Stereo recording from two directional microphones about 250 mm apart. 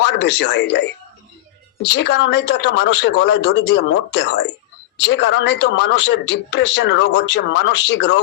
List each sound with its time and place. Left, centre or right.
0.0 s speech: left